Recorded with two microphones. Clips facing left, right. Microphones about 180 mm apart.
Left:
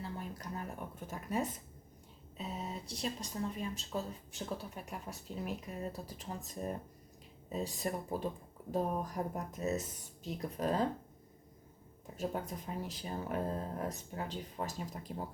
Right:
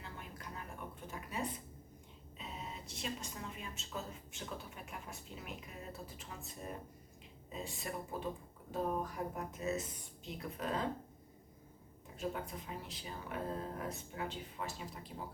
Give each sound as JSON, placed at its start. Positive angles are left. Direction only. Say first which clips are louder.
{"t": 0.0, "sound": "a sound", "louder": "left 7 dB", "side_deg": 40}
{"t": 2.4, "sound": "speech", "louder": "left 6 dB", "side_deg": 40}
{"t": 12.1, "sound": "speech", "louder": "left 3 dB", "side_deg": 40}